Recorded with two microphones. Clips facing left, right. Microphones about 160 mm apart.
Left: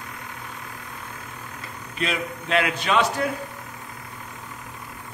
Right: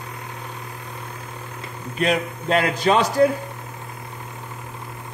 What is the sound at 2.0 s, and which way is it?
Speech, 40° right (ahead or behind).